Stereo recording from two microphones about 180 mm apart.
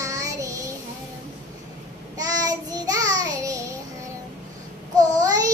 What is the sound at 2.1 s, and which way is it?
Child singing, 20° right (ahead or behind).